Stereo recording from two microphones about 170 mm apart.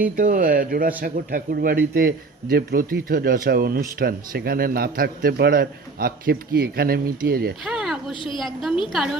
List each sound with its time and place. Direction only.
0.2 s a man's voice: 55° right (ahead or behind)
7.6 s speech: centre (ahead or behind)
8.1 s a woman's voice: 30° left (ahead or behind)
8.4 s a woman's voice: centre (ahead or behind)